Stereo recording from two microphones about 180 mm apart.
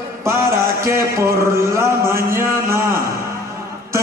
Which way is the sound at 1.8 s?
15° right (ahead or behind).